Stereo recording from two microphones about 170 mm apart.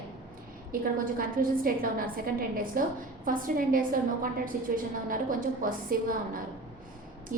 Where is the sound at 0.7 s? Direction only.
55° right (ahead or behind).